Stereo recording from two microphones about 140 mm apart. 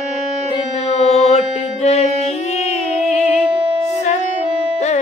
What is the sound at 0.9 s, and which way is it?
Music, 50° left (ahead or behind).